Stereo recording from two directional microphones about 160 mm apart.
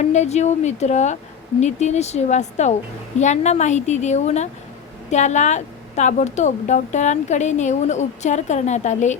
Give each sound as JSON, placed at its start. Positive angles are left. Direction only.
{"t": 0.0, "sound": "speech", "side_deg": 45}